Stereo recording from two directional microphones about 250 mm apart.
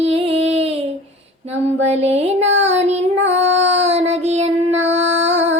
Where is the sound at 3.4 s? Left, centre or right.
Right.